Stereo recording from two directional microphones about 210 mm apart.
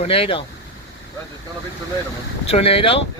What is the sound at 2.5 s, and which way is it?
Speech, 25° left (ahead or behind).